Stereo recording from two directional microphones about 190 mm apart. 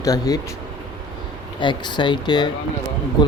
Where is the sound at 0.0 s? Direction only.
20° left (ahead or behind).